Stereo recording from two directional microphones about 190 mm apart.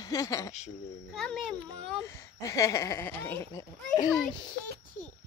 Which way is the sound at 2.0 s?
15° left (ahead or behind).